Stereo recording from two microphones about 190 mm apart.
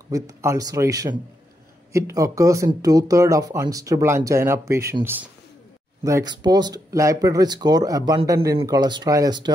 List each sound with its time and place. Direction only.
0.1 s speech: 15° right (ahead or behind)